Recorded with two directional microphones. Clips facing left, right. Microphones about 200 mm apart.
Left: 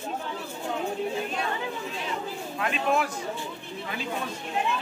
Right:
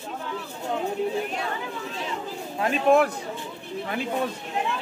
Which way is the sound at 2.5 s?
35° right (ahead or behind).